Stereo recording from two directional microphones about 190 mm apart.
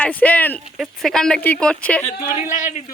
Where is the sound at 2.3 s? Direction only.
40° left (ahead or behind).